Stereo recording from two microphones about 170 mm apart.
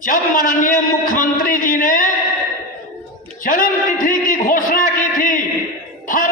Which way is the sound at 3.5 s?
55° left (ahead or behind).